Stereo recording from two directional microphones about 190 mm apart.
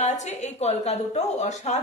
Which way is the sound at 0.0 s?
35° left (ahead or behind).